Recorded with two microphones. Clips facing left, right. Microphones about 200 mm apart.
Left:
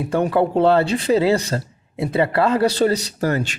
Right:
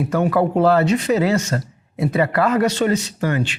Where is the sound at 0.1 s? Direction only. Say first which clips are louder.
Left 2 dB; 30° left (ahead or behind).